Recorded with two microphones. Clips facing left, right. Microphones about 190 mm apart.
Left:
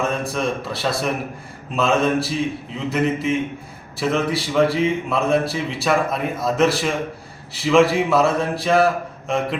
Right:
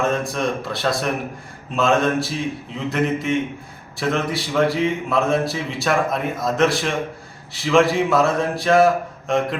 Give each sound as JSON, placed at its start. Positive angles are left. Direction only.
{"t": 0.0, "sound": "a man's voice", "side_deg": 0}